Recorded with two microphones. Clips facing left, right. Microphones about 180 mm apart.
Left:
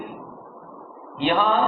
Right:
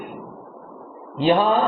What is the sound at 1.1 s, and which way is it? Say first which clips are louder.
Speech: right 4 dB; 35° right (ahead or behind).